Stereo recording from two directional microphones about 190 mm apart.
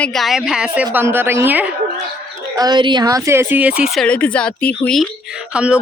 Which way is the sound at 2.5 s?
20° right (ahead or behind).